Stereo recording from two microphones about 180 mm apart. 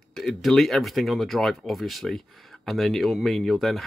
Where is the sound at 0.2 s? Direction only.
Centre (ahead or behind).